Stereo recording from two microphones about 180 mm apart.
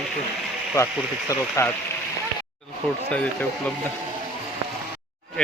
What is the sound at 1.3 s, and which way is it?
Speech, 15° left (ahead or behind).